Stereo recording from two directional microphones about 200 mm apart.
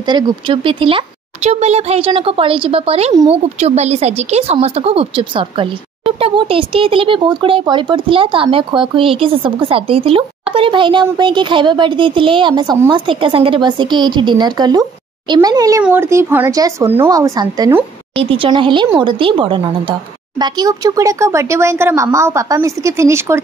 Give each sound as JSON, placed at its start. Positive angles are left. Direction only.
{"t": 0.0, "sound": "a woman's voice", "side_deg": -25}
{"t": 18.1, "sound": "a woman's voice", "side_deg": -25}